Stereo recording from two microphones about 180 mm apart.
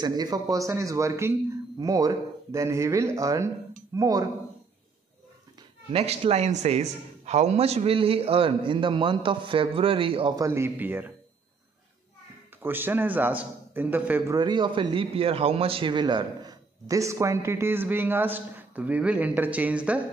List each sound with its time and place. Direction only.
0.0 s a man's voice: 20° right (ahead or behind)
5.9 s a man's voice: 35° right (ahead or behind); by 11.1 s 10° right (ahead or behind)
12.6 s a man's voice: 10° right (ahead or behind)